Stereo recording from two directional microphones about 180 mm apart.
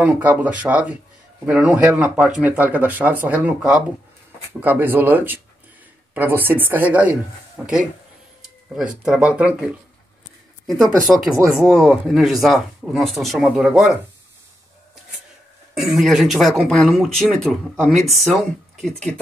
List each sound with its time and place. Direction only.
0.0 s speech: 10° right (ahead or behind)
15.7 s speech: centre (ahead or behind)